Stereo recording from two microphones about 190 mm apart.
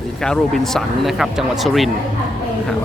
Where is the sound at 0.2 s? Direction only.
5° left (ahead or behind).